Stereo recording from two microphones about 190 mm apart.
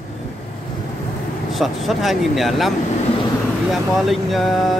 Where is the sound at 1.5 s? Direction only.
Centre (ahead or behind).